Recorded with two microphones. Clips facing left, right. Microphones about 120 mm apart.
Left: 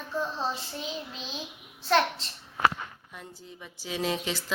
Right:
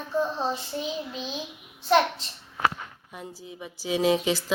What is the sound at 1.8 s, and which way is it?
Speech, 15° right (ahead or behind).